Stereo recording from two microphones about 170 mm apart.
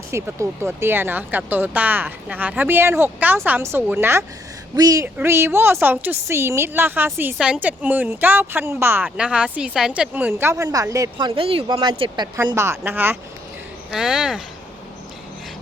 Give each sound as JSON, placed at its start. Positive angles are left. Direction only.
{"t": 0.1, "sound": "a woman's voice", "side_deg": -15}
{"t": 11.3, "sound": "speech", "side_deg": -35}